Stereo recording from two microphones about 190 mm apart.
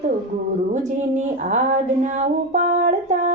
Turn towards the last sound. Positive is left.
turn(degrees=-40)  # may be behind; listen again after turning